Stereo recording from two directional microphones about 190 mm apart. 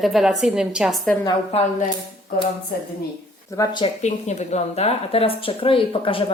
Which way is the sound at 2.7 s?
50° left (ahead or behind).